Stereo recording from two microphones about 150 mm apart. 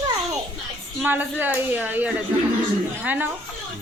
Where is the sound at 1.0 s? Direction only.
10° right (ahead or behind).